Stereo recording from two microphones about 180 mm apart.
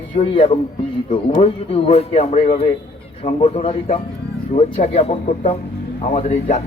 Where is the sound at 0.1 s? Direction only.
35° left (ahead or behind).